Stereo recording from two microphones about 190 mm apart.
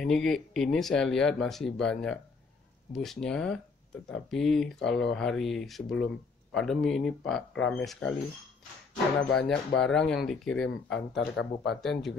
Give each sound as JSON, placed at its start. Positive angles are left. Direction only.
{"t": 0.0, "sound": "speech", "side_deg": 0}
{"t": 9.3, "sound": "speech", "side_deg": 5}
{"t": 11.3, "sound": "speech", "side_deg": 60}